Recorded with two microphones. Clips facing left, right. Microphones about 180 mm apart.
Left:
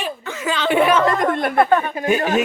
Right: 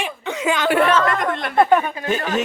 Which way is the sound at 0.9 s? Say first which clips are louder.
Left 2 dB; 20° left (ahead or behind).